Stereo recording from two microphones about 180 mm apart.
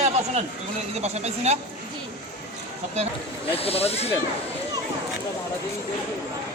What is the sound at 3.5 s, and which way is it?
Speech, 35° left (ahead or behind).